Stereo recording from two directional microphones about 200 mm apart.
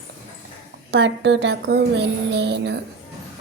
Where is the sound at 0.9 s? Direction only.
60° right (ahead or behind).